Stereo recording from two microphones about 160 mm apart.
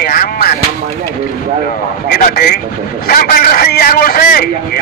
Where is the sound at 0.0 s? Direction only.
65° left (ahead or behind).